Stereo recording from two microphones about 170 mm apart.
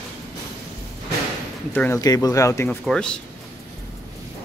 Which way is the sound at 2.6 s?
5° left (ahead or behind).